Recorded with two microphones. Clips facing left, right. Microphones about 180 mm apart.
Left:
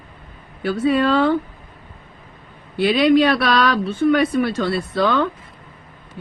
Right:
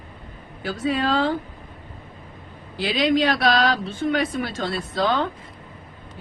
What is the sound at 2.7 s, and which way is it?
A woman's voice, 60° left (ahead or behind).